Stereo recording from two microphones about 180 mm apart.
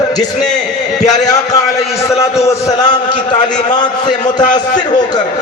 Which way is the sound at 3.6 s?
25° left (ahead or behind).